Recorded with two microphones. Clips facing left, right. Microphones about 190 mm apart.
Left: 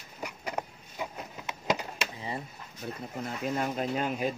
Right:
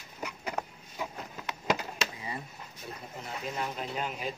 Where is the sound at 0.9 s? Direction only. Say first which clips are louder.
Left 1 dB; 20° left (ahead or behind).